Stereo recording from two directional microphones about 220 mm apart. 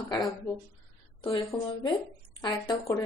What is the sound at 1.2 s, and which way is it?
Speech, 25° left (ahead or behind).